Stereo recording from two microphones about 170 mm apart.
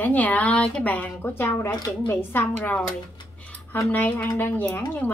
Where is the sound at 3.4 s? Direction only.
10° left (ahead or behind).